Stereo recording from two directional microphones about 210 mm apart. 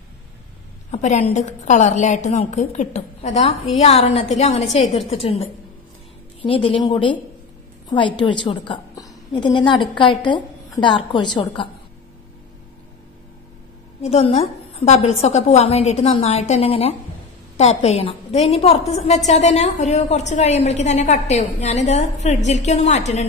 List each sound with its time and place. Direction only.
0.9 s a woman's voice: 30° left (ahead or behind)
14.0 s a woman's voice: 30° left (ahead or behind)